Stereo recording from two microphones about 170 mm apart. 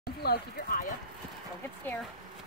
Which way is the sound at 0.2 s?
60° left (ahead or behind).